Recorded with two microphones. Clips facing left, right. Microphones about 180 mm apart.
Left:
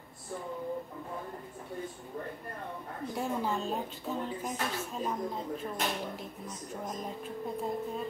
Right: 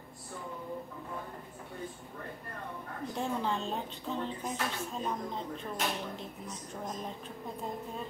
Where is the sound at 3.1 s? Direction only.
5° left (ahead or behind).